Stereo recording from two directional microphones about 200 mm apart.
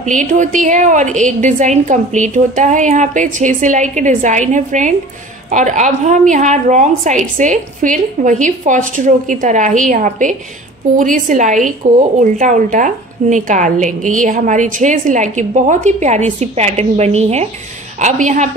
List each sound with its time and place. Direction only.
0.0 s a woman's voice: 40° right (ahead or behind)